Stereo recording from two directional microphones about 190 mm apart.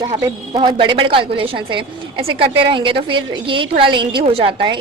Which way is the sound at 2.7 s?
25° right (ahead or behind).